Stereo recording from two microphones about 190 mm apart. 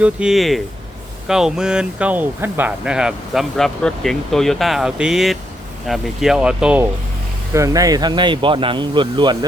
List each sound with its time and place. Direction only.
0.0 s speech: 5° right (ahead or behind)
7.5 s speech: 15° right (ahead or behind)